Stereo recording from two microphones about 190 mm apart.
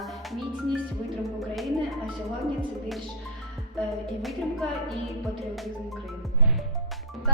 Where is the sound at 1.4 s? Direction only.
Centre (ahead or behind).